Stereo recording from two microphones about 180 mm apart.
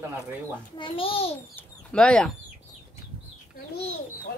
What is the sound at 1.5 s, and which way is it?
Speech, 5° left (ahead or behind).